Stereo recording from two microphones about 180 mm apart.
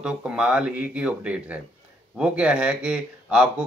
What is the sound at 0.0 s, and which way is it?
Speech, 5° right (ahead or behind).